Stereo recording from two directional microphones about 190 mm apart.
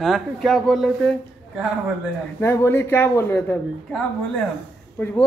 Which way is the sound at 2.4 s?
10° left (ahead or behind).